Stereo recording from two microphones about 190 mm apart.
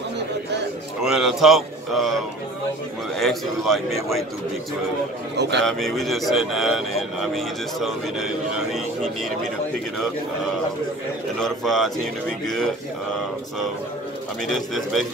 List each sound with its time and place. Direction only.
1.0 s a man's voice: centre (ahead or behind)
3.2 s speech: centre (ahead or behind)
5.3 s a man's voice: 65° right (ahead or behind)
5.6 s speech: centre (ahead or behind)
11.3 s speech: centre (ahead or behind)
14.5 s speech: centre (ahead or behind)